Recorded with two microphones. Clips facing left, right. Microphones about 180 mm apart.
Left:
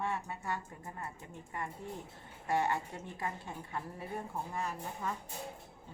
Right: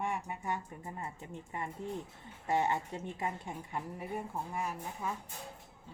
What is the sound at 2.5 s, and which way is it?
A woman's voice, 20° right (ahead or behind).